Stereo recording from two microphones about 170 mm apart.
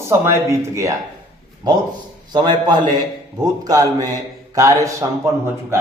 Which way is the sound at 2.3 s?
25° right (ahead or behind).